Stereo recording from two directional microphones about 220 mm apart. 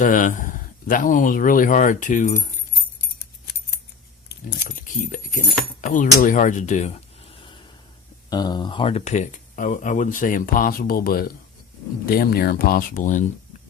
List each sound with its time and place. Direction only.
0.0 s speech: 35° left (ahead or behind)
4.3 s speech: 45° left (ahead or behind)